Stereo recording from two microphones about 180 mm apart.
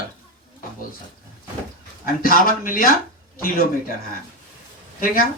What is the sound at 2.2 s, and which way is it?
Speech, 55° left (ahead or behind).